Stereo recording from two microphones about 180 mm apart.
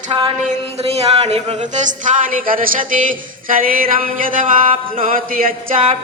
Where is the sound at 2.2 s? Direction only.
50° right (ahead or behind).